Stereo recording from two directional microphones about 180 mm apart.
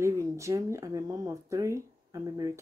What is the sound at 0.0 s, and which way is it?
Speech, 15° right (ahead or behind).